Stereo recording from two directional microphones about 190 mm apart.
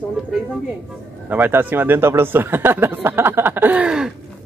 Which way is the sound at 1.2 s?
10° right (ahead or behind).